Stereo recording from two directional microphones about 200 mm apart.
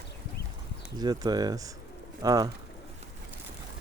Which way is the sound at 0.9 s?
20° right (ahead or behind).